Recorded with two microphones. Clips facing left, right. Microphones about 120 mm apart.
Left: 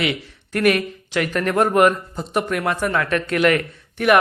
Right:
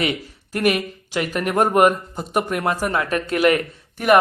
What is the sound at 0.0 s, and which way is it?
Speech, 35° right (ahead or behind).